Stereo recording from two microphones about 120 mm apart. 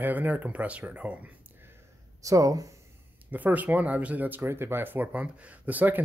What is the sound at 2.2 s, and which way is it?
Speech, 30° right (ahead or behind).